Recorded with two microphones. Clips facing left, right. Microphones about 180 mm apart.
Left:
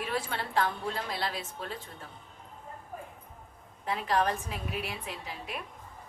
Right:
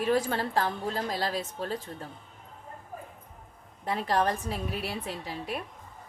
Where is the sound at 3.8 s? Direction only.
40° right (ahead or behind).